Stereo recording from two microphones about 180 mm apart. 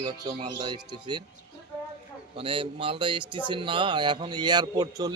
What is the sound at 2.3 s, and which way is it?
Speech, 30° right (ahead or behind).